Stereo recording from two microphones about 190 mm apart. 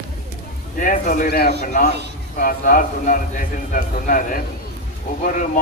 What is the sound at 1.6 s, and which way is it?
A man's voice, 40° left (ahead or behind).